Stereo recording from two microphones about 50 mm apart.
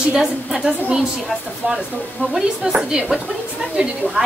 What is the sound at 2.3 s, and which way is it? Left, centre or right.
A woman's voice, centre.